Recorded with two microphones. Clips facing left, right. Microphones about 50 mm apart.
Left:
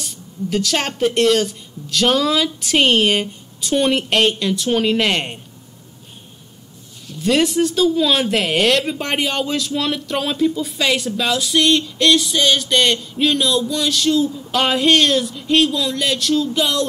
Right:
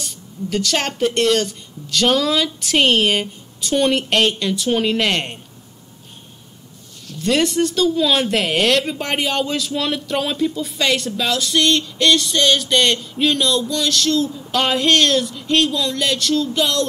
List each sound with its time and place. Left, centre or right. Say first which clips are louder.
0.0 s speech: left 1 dB; centre
7.1 s speech: left 1 dB; centre